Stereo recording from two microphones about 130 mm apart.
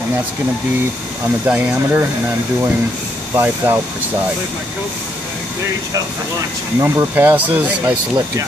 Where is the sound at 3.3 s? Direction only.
20° right (ahead or behind).